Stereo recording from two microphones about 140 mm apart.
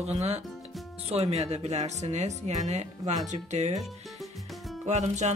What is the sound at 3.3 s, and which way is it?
Music, 55° right (ahead or behind).